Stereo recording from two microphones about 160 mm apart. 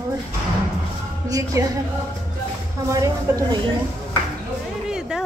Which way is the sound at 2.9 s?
20° right (ahead or behind).